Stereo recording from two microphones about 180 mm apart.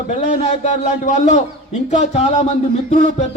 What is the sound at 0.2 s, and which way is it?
Speech, 45° left (ahead or behind).